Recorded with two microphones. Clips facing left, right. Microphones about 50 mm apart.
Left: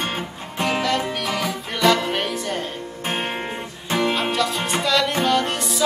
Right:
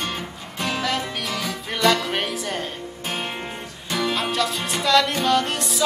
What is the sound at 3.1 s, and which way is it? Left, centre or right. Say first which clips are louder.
Music: left 3 dB; left.